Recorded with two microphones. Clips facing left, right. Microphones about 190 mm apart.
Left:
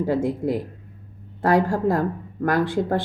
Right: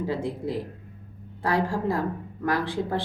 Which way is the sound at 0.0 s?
50° left (ahead or behind).